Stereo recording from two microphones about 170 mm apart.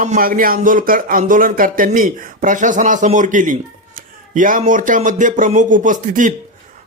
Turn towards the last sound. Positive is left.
turn(degrees=-50)  # may be behind; listen again after turning